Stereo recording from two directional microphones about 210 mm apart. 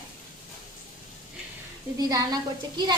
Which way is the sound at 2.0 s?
15° right (ahead or behind).